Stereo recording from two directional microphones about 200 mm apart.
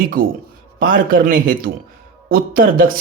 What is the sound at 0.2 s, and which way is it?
Speech, 45° right (ahead or behind).